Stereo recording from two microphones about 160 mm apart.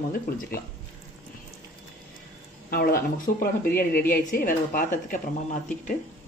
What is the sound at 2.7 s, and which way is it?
A woman's voice, 65° left (ahead or behind).